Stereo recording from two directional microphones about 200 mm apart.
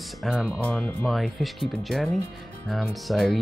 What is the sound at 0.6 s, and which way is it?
Speech, 5° left (ahead or behind).